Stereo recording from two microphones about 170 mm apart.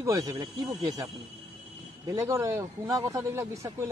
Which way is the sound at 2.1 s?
15° right (ahead or behind).